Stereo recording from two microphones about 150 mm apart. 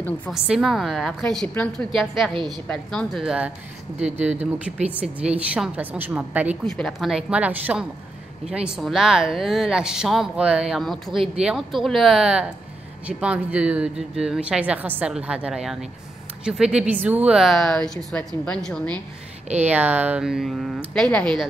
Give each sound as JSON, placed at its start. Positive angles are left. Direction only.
{"t": 0.3, "sound": "a woman's voice", "side_deg": -5}
{"t": 2.0, "sound": "a woman's voice", "side_deg": 0}
{"t": 2.3, "sound": "a woman's voice", "side_deg": -30}
{"t": 2.7, "sound": "a woman's voice", "side_deg": 5}
{"t": 6.6, "sound": "a woman's voice", "side_deg": 0}
{"t": 19.6, "sound": "a woman's voice", "side_deg": -10}